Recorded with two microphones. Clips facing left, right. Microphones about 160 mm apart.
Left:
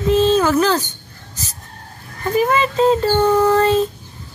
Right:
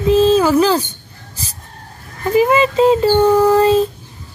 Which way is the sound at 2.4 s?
10° right (ahead or behind).